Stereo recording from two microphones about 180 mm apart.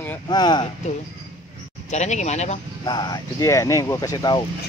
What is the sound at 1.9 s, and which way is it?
Speech, 40° left (ahead or behind).